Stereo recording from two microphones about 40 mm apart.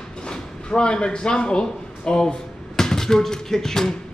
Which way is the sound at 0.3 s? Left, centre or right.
Left.